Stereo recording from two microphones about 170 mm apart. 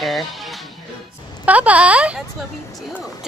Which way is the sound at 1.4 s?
10° right (ahead or behind).